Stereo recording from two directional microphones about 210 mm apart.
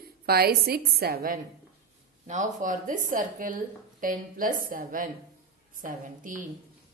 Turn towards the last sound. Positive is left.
turn(degrees=-40)  # may be behind; listen again after turning